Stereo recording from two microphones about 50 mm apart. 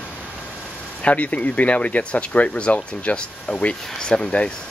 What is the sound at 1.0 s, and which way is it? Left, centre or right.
Speech, left.